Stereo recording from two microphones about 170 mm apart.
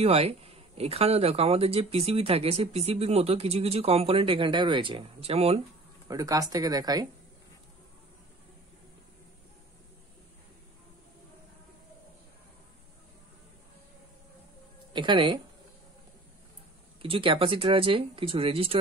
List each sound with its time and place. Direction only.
0.0 s speech: 35° right (ahead or behind)
6.0 s speech: 20° right (ahead or behind)
14.9 s speech: 30° right (ahead or behind)
17.0 s speech: 30° right (ahead or behind)